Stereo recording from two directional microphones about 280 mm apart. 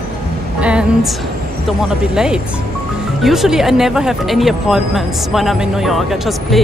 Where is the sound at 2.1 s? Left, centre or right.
Centre.